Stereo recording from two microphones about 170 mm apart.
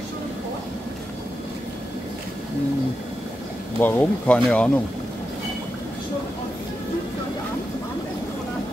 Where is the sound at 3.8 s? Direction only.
10° left (ahead or behind).